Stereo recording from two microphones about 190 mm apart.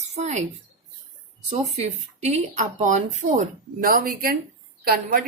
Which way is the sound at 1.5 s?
35° right (ahead or behind).